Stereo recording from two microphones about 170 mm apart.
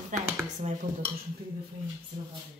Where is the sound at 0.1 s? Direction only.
50° right (ahead or behind).